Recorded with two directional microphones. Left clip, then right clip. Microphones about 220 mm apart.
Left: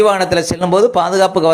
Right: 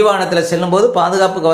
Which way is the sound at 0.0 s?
25° left (ahead or behind).